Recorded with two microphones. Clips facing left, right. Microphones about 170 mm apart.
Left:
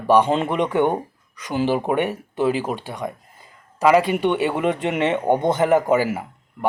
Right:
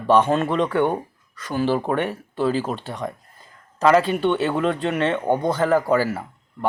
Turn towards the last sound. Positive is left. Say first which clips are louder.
# left 2 dB
turn(degrees=15)  # may be behind; listen again after turning